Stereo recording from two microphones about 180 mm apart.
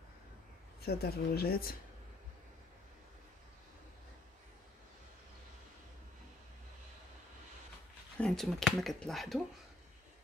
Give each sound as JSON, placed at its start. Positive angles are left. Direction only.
{"t": 0.8, "sound": "speech", "side_deg": 60}
{"t": 8.2, "sound": "speech", "side_deg": 5}